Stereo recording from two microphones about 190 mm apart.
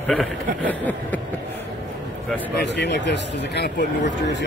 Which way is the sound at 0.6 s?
10° left (ahead or behind).